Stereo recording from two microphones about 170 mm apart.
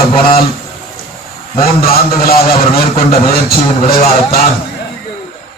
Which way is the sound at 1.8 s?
60° left (ahead or behind).